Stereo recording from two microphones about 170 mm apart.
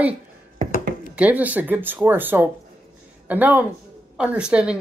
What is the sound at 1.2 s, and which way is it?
Speech, 10° right (ahead or behind).